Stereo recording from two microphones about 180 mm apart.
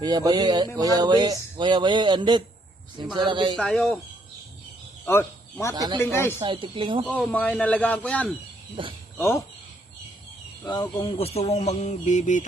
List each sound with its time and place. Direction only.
0.0 s speech: 20° right (ahead or behind)
3.6 s speech: 5° left (ahead or behind)
5.0 s speech: 15° left (ahead or behind)
5.7 s speech: 25° right (ahead or behind)
6.0 s a man's voice: 15° left (ahead or behind)
6.4 s speech: 30° right (ahead or behind)
7.3 s a man's voice: 5° left (ahead or behind)
10.7 s speech: 25° left (ahead or behind); by 12.5 s 45° left (ahead or behind)